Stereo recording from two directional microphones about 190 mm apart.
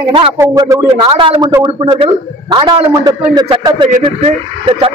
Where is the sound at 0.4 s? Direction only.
15° right (ahead or behind).